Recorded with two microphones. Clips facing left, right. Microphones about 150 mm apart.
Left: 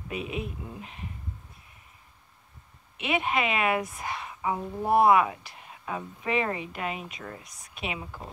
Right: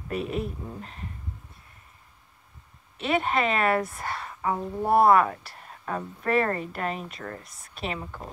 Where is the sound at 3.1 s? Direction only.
5° left (ahead or behind).